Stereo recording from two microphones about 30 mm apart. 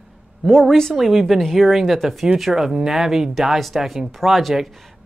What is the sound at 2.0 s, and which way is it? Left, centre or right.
Speech, centre.